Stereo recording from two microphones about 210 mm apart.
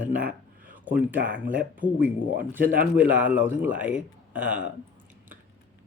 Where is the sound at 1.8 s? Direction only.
5° right (ahead or behind).